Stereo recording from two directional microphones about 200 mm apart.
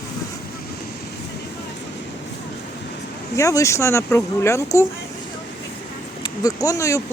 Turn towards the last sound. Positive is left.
turn(degrees=15)  # may be behind; listen again after turning